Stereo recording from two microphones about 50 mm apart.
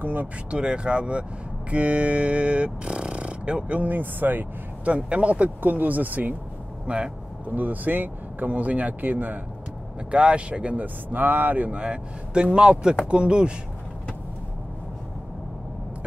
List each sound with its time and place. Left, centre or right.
0.0 s vehicle: right
0.5 s speech: right
4.8 s speech: right
6.9 s speech: right
7.4 s speech: right
10.1 s speech: right